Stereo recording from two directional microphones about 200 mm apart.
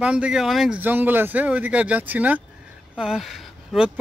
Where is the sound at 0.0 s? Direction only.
5° right (ahead or behind).